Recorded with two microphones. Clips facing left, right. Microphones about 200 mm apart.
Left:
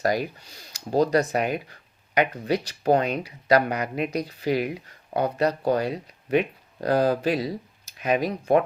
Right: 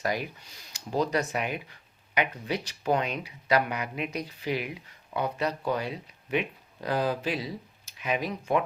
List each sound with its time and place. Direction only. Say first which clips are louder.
0.0 s speech: left 6 dB; 40° left (ahead or behind)